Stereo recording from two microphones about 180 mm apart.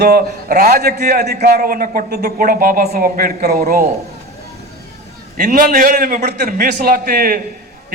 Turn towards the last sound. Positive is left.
turn(degrees=-55)  # may be behind; listen again after turning